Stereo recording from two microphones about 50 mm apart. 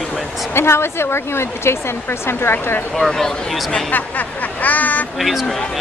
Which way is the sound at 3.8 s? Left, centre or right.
Left.